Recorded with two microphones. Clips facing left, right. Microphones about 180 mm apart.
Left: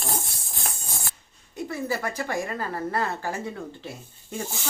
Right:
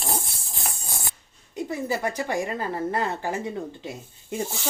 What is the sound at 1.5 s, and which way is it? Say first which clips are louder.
Speech: right 1 dB; 20° right (ahead or behind).